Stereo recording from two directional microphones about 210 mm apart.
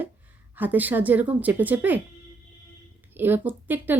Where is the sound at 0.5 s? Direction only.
10° right (ahead or behind).